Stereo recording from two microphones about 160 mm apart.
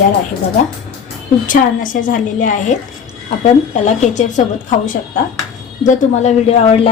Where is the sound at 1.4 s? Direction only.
55° left (ahead or behind); by 6.9 s 40° left (ahead or behind).